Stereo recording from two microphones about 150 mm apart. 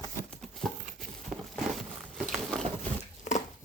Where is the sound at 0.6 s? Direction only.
5° left (ahead or behind).